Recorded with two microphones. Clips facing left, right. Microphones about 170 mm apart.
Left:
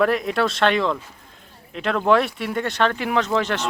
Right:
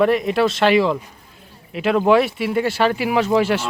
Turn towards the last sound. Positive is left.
turn(degrees=-10)  # may be behind; listen again after turning